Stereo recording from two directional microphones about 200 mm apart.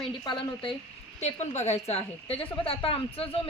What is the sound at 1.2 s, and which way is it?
A woman's voice, 35° left (ahead or behind).